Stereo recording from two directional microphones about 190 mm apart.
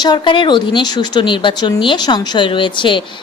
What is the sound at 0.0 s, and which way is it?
A woman's voice, 25° left (ahead or behind).